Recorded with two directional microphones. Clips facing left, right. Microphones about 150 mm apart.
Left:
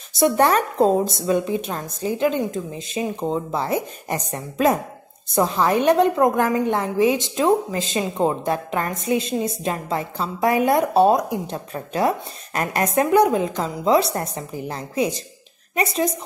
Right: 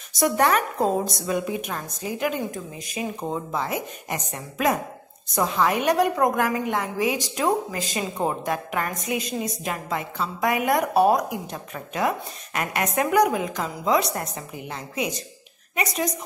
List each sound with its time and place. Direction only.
0.1 s a woman's voice: 30° left (ahead or behind)